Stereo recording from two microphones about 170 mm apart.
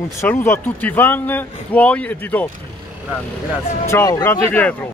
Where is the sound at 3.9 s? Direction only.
15° left (ahead or behind).